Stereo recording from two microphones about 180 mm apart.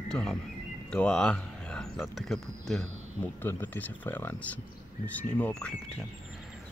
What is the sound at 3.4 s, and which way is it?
Speech, 10° left (ahead or behind).